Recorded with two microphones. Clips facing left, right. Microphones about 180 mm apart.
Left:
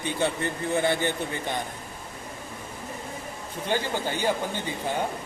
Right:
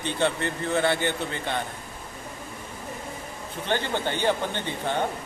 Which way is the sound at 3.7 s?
10° left (ahead or behind).